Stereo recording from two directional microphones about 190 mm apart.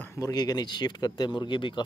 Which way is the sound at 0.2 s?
20° left (ahead or behind).